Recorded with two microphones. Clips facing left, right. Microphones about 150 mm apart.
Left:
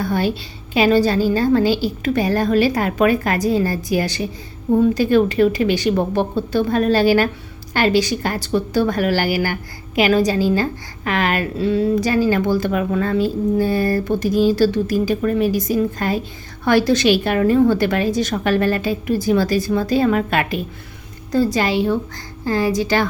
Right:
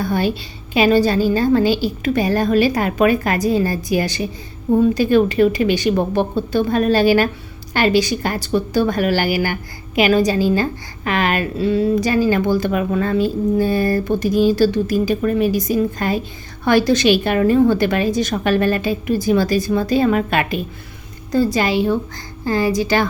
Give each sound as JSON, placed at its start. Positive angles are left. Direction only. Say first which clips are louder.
{"t": 0.0, "sound": "a woman's voice", "louder": "right 1 dB", "side_deg": -15}